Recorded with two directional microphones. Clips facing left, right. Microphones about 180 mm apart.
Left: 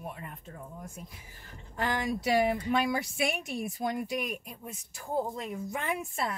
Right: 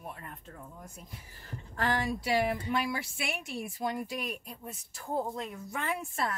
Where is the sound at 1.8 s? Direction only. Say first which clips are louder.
Right 1 dB; 15° left (ahead or behind).